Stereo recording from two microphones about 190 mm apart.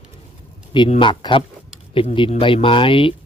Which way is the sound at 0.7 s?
25° left (ahead or behind).